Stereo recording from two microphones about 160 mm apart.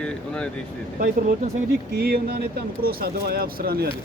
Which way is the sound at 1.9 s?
75° right (ahead or behind).